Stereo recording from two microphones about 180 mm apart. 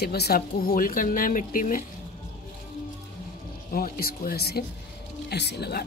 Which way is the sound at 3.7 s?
55° left (ahead or behind).